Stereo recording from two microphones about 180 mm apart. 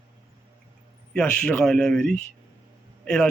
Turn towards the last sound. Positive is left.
turn(degrees=5)  # may be behind; listen again after turning